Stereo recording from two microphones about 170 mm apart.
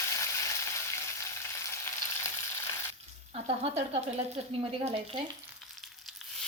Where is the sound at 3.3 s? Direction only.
40° right (ahead or behind).